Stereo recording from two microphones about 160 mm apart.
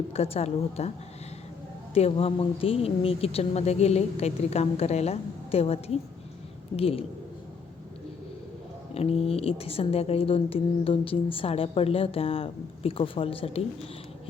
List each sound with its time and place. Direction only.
0.1 s a woman's voice: 40° left (ahead or behind)
9.0 s a woman's voice: 40° left (ahead or behind)